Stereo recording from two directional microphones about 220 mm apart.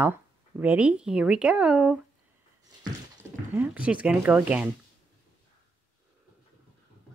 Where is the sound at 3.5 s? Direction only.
10° right (ahead or behind).